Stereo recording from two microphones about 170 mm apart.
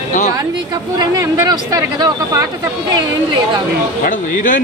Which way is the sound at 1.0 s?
25° right (ahead or behind).